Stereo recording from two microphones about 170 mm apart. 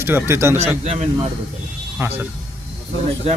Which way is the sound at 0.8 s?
40° right (ahead or behind).